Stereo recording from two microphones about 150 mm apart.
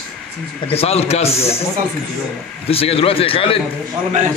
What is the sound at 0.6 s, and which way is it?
Speech, 45° left (ahead or behind).